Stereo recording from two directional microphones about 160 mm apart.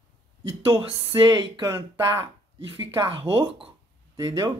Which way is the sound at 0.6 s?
35° right (ahead or behind).